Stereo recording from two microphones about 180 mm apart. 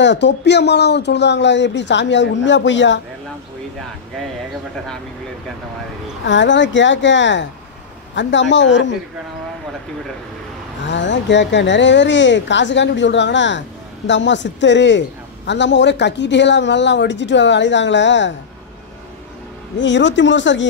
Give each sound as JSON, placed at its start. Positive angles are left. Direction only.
{"t": 0.0, "sound": "speech", "side_deg": 75}
{"t": 6.2, "sound": "speech", "side_deg": 90}
{"t": 10.9, "sound": "speech", "side_deg": 85}
{"t": 19.8, "sound": "speech", "side_deg": 85}